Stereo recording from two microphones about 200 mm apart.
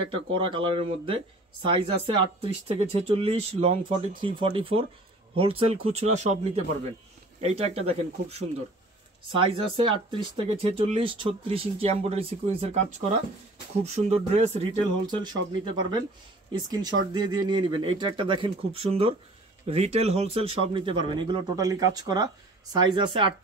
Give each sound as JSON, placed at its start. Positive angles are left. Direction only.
{"t": 0.1, "sound": "speech", "side_deg": -25}
{"t": 16.5, "sound": "speech", "side_deg": -20}